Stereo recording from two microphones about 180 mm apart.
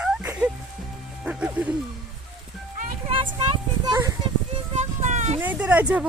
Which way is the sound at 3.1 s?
30° right (ahead or behind).